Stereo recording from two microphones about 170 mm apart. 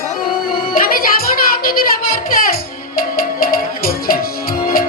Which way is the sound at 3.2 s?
60° left (ahead or behind).